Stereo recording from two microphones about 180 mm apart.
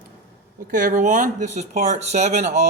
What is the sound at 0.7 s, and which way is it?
Speech, 45° right (ahead or behind).